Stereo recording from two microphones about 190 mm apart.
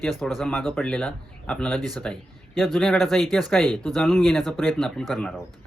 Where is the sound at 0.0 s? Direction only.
Centre (ahead or behind).